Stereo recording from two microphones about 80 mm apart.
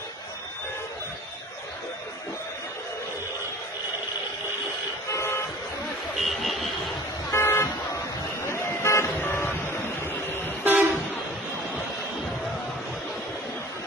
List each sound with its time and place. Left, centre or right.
5.1 s vehicle: left
6.1 s vehicle: centre
7.3 s vehicle: left
9.7 s a sound: left
10.6 s vehicle: right